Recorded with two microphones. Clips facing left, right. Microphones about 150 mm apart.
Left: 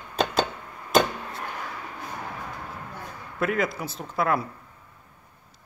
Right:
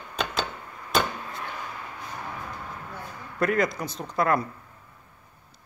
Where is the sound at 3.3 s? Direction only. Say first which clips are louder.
Right 2 dB; 5° left (ahead or behind).